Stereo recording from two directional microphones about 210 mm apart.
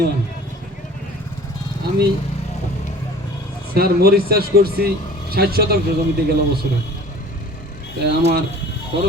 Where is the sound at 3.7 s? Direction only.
45° right (ahead or behind).